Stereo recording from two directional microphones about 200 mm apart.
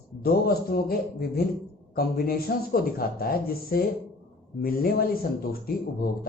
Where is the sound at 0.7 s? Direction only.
50° left (ahead or behind).